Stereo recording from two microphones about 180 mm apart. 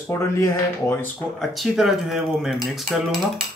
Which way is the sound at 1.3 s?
Centre (ahead or behind).